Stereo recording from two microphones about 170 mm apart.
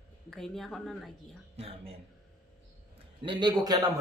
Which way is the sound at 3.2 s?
30° right (ahead or behind).